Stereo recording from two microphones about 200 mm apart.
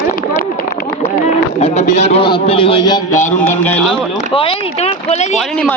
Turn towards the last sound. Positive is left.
turn(degrees=35)  # may be behind; listen again after turning